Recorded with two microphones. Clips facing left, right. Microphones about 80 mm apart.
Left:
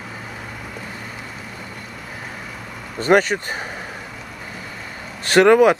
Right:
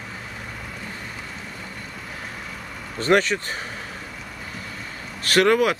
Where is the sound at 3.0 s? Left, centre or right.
Centre.